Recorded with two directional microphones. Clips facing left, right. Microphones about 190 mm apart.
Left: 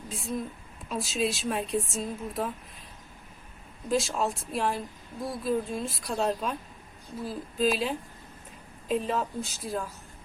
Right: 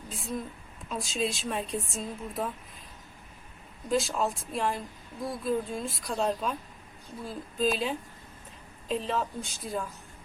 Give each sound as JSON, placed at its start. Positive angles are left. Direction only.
{"t": 0.1, "sound": "a woman's voice", "side_deg": 0}
{"t": 3.8, "sound": "a woman's voice", "side_deg": 0}